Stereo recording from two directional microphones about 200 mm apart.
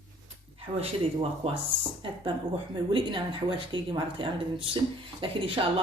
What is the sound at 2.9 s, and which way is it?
Speech, 25° right (ahead or behind).